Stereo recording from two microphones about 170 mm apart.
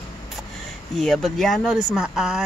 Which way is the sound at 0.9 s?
Centre (ahead or behind).